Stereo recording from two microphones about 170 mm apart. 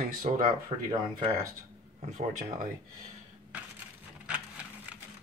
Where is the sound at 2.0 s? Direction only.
45° right (ahead or behind).